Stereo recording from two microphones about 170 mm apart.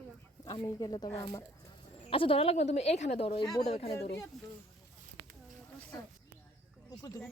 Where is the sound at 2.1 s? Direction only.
35° left (ahead or behind).